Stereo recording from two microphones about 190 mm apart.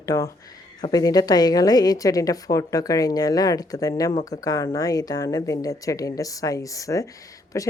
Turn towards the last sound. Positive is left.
turn(degrees=15)  # may be behind; listen again after turning